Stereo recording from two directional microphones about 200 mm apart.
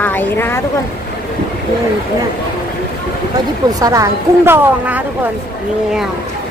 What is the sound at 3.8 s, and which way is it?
Speech, 15° right (ahead or behind).